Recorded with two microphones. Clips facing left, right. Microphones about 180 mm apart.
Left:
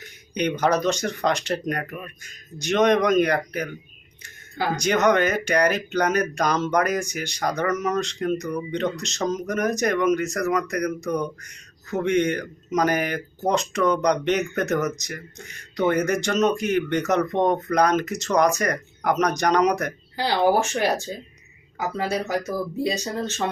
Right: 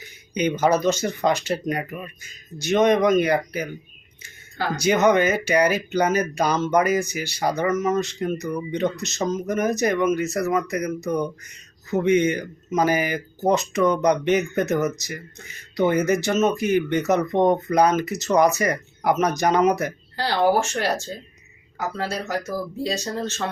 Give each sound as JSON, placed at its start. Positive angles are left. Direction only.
{"t": 0.0, "sound": "speech", "side_deg": -5}
{"t": 4.8, "sound": "speech", "side_deg": -5}
{"t": 20.1, "sound": "speech", "side_deg": 15}